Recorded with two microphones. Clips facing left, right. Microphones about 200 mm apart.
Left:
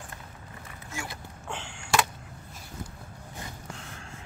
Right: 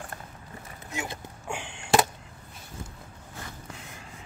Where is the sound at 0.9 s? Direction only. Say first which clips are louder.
Right 4 dB; 20° right (ahead or behind).